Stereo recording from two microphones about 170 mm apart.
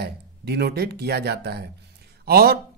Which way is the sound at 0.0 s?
75° right (ahead or behind).